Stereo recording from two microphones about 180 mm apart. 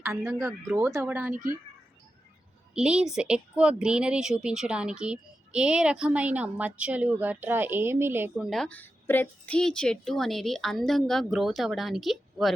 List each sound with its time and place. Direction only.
0.0 s speech: 15° right (ahead or behind)
2.7 s speech: 5° right (ahead or behind)
8.4 s speech: 5° left (ahead or behind)